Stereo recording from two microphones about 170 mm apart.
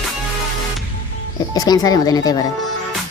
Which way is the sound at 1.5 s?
20° left (ahead or behind).